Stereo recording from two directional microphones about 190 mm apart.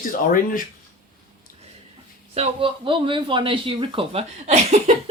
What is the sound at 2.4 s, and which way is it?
Speech, 25° right (ahead or behind).